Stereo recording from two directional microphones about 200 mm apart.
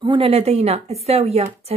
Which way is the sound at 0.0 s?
25° right (ahead or behind).